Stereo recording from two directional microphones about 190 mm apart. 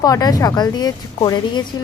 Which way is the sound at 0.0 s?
20° left (ahead or behind).